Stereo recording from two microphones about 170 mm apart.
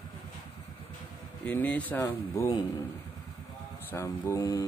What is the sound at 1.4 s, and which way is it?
Speech, 10° left (ahead or behind).